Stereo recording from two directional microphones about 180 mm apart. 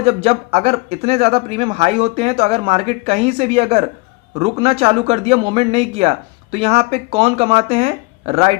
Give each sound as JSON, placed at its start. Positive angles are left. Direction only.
{"t": 0.0, "sound": "speech", "side_deg": -35}